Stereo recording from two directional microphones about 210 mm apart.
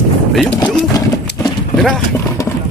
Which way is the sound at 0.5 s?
20° left (ahead or behind).